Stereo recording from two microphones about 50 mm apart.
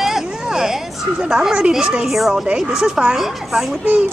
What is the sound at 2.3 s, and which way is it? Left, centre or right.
Speech, centre.